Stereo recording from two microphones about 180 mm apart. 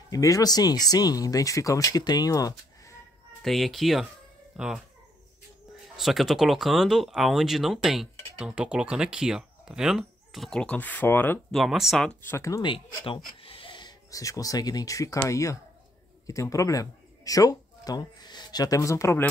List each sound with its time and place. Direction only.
0.1 s speech: 20° left (ahead or behind)
3.4 s speech: centre (ahead or behind)
5.9 s speech: centre (ahead or behind)
11.5 s speech: centre (ahead or behind); by 19.2 s 15° left (ahead or behind)